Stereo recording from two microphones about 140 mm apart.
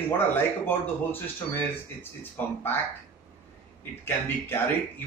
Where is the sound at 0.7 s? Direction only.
15° left (ahead or behind).